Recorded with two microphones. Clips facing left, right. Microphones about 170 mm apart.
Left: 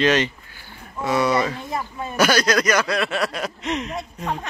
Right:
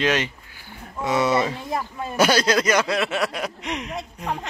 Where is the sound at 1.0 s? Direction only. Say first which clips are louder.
Left 1 dB; 20° right (ahead or behind).